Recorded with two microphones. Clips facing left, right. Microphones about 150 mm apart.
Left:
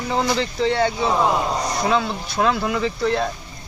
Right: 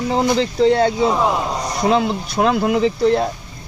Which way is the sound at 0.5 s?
40° right (ahead or behind).